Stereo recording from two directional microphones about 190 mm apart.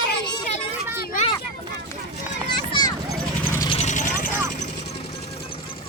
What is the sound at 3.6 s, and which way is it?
Vehicle, 35° left (ahead or behind).